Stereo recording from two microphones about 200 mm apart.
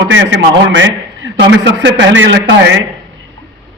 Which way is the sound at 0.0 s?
70° right (ahead or behind).